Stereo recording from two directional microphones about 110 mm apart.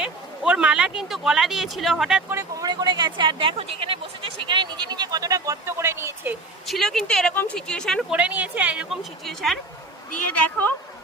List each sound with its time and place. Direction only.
0.0 s speech: 10° right (ahead or behind)
2.3 s speech: 25° right (ahead or behind)
2.6 s speech: 45° right (ahead or behind); by 6.3 s 25° right (ahead or behind)
6.7 s a woman's voice: 5° left (ahead or behind)
8.1 s a woman's voice: 15° right (ahead or behind)
9.2 s a woman's voice: centre (ahead or behind)
10.4 s speech: 15° left (ahead or behind)